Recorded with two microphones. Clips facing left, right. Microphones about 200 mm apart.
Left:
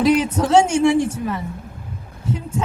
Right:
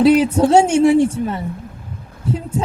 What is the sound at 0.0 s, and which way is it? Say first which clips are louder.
A woman's voice: right 5 dB; 30° right (ahead or behind).